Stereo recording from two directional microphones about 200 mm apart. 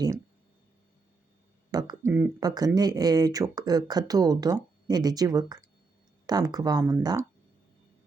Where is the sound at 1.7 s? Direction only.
15° right (ahead or behind).